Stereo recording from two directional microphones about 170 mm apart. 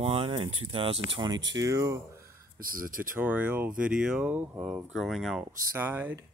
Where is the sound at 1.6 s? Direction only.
20° right (ahead or behind).